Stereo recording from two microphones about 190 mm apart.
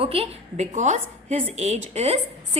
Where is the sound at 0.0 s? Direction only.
30° right (ahead or behind).